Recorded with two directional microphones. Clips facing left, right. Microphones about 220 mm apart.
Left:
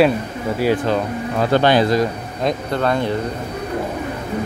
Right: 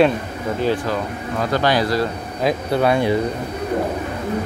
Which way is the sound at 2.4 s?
10° right (ahead or behind).